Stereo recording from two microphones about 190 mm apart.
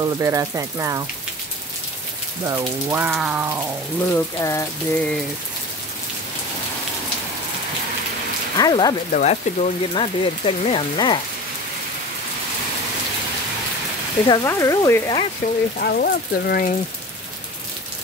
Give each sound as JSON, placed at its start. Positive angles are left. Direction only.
{"t": 0.2, "sound": "speech", "side_deg": -15}
{"t": 2.4, "sound": "speech", "side_deg": -15}
{"t": 4.1, "sound": "water", "side_deg": 15}
{"t": 8.5, "sound": "speech", "side_deg": 20}
{"t": 9.1, "sound": "speech", "side_deg": 35}
{"t": 14.2, "sound": "water", "side_deg": 20}
{"t": 15.8, "sound": "speech", "side_deg": 55}